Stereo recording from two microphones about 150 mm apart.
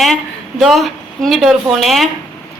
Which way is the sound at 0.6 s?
Centre (ahead or behind).